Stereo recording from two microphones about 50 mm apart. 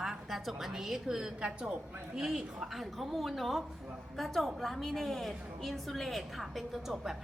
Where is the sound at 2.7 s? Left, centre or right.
Centre.